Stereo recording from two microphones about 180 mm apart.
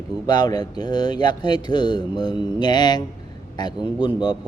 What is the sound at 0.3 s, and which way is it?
A man's voice, 20° left (ahead or behind).